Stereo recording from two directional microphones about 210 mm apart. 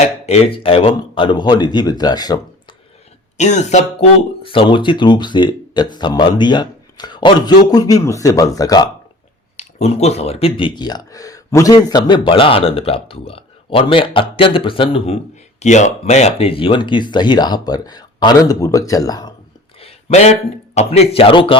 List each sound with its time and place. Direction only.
0.0 s speech: 30° left (ahead or behind)
3.3 s speech: 35° left (ahead or behind); by 8.9 s 20° left (ahead or behind)
9.6 s speech: 30° left (ahead or behind)
19.8 s a sound: 30° left (ahead or behind)
20.7 s speech: 30° left (ahead or behind)